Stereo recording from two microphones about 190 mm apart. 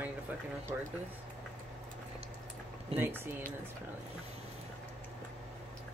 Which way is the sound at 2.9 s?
10° right (ahead or behind).